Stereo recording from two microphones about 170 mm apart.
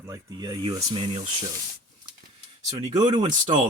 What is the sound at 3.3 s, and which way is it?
Speech, 50° right (ahead or behind).